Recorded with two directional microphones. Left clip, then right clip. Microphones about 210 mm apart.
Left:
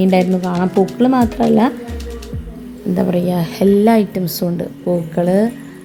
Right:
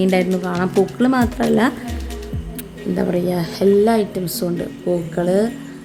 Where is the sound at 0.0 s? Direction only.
Centre (ahead or behind).